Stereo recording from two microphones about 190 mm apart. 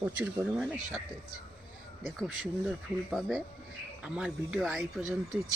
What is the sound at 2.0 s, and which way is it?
Speech, centre (ahead or behind).